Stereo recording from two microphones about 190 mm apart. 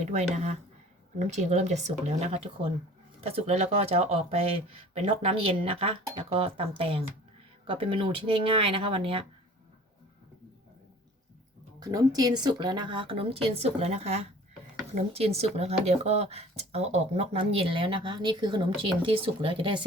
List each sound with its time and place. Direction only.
0.0 s speech: 35° right (ahead or behind)
11.8 s speech: 20° right (ahead or behind)